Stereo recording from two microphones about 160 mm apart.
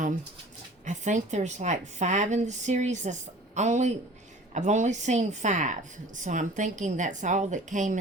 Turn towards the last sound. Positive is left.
turn(degrees=-50)  # may be behind; listen again after turning